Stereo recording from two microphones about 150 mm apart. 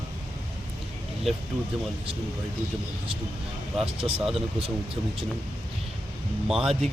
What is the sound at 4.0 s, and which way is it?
Speech, 40° right (ahead or behind).